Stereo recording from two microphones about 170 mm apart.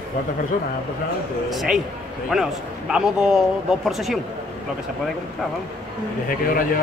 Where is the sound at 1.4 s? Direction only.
Centre (ahead or behind).